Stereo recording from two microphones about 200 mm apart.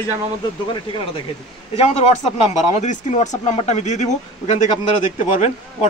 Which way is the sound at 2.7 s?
35° left (ahead or behind).